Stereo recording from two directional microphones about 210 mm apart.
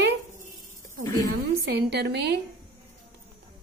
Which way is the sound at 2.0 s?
50° right (ahead or behind).